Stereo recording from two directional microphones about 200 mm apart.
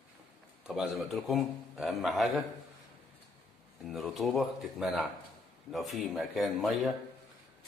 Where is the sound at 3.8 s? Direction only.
Centre (ahead or behind).